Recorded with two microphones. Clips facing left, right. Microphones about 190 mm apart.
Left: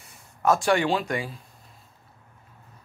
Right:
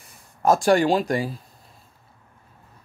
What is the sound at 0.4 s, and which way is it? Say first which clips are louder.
Speech: right 4 dB; 35° right (ahead or behind).